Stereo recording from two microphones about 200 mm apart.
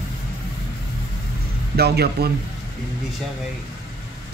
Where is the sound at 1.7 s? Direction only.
55° right (ahead or behind).